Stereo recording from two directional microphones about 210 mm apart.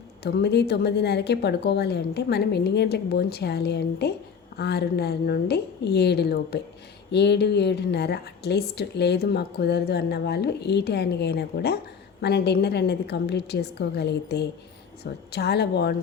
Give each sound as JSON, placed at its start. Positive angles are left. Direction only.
{"t": 0.2, "sound": "a woman's voice", "side_deg": 50}